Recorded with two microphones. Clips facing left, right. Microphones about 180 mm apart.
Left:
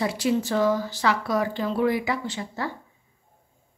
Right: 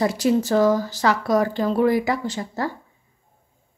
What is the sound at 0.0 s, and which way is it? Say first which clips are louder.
Speech: right 4 dB; 40° right (ahead or behind).